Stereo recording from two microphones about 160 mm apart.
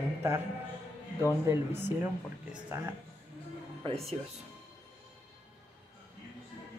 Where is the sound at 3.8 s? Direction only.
35° right (ahead or behind).